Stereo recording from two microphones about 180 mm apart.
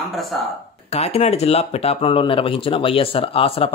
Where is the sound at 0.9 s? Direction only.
35° left (ahead or behind).